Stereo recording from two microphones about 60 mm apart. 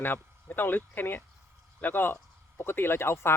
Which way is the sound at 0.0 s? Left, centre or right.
Left.